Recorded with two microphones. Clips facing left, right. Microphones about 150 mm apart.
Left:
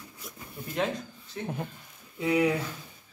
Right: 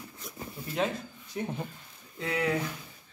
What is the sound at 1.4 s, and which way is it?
Speech, 10° right (ahead or behind).